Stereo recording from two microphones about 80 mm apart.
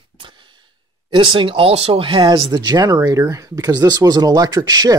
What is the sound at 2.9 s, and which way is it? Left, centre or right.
Speech, right.